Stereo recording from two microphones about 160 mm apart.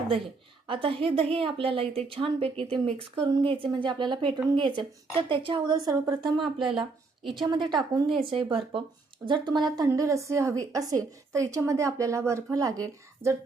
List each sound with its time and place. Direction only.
0.7 s a woman's voice: 35° right (ahead or behind)